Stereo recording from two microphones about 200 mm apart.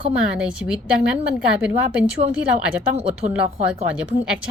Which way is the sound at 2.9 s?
30° right (ahead or behind).